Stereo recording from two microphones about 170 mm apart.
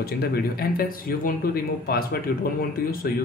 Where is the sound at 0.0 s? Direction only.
65° left (ahead or behind).